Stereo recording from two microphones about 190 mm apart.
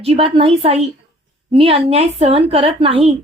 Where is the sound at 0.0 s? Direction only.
30° right (ahead or behind).